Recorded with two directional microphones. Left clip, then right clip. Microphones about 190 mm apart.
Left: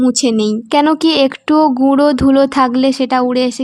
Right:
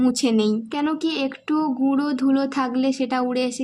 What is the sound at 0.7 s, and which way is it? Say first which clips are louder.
Speech: left 13 dB; 45° left (ahead or behind).